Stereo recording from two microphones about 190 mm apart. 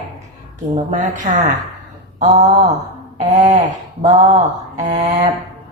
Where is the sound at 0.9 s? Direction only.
40° right (ahead or behind).